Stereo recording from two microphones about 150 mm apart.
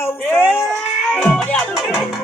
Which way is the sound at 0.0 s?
15° left (ahead or behind).